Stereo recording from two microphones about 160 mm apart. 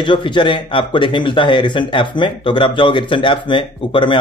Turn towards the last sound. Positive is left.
turn(degrees=30)  # may be behind; listen again after turning